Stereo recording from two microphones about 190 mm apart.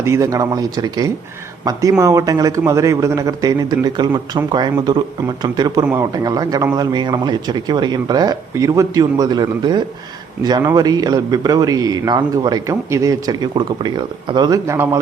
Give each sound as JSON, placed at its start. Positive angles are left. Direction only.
{"t": 0.0, "sound": "a man's voice", "side_deg": -15}